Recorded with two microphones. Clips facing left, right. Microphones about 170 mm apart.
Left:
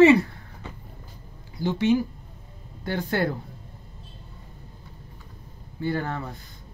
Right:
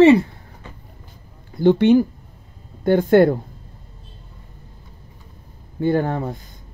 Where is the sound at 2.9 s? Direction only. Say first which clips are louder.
Right 13 dB; 50° right (ahead or behind).